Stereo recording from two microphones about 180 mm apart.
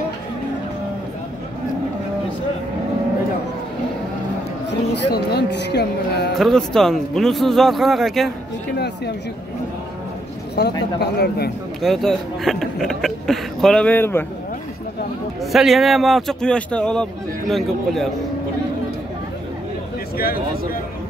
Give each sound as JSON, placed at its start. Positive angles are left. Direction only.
{"t": 4.9, "sound": "speech", "side_deg": 70}
{"t": 6.3, "sound": "speech", "side_deg": 0}
{"t": 8.7, "sound": "speech", "side_deg": 65}
{"t": 10.6, "sound": "speech", "side_deg": 65}
{"t": 11.8, "sound": "speech", "side_deg": 0}
{"t": 15.5, "sound": "speech", "side_deg": 0}
{"t": 20.2, "sound": "speech", "side_deg": 55}